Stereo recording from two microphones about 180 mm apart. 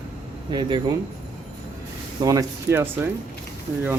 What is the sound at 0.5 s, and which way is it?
Speech, 25° right (ahead or behind).